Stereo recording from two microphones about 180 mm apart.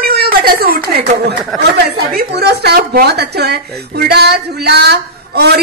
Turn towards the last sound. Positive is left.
turn(degrees=-65)  # may be behind; listen again after turning